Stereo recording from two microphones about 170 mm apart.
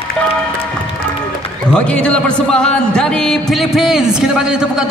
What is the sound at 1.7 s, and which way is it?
A man's voice, 5° left (ahead or behind).